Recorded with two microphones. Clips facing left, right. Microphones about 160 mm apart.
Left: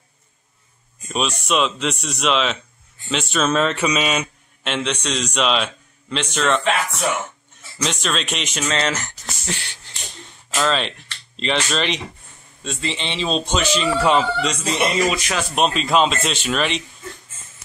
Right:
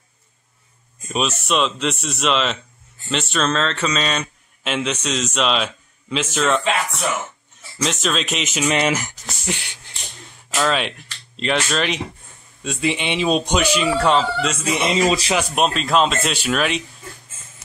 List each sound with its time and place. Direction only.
1.0 s a man's voice: 5° right (ahead or behind)
4.6 s a man's voice: 5° right (ahead or behind)
8.6 s a man's voice: 15° right (ahead or behind)
13.9 s a man's voice: 5° left (ahead or behind)
15.0 s speech: 30° right (ahead or behind)
15.5 s a man's voice: centre (ahead or behind)